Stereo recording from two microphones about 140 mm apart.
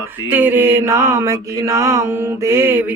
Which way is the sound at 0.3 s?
10° right (ahead or behind).